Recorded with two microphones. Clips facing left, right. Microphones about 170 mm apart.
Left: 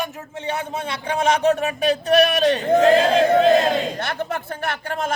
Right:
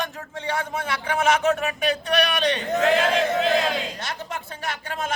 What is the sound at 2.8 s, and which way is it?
A man's voice, 35° left (ahead or behind).